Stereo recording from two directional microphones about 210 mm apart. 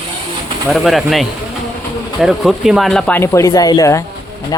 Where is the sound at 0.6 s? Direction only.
Centre (ahead or behind).